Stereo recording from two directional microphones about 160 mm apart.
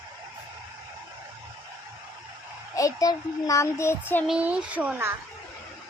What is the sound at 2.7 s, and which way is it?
Speech, 20° left (ahead or behind).